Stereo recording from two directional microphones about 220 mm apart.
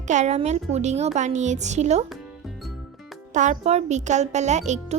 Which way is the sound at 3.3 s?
35° right (ahead or behind).